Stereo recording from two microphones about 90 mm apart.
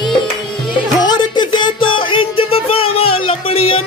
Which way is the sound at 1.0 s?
55° left (ahead or behind).